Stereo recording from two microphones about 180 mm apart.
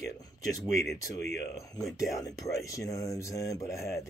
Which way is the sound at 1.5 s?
20° left (ahead or behind).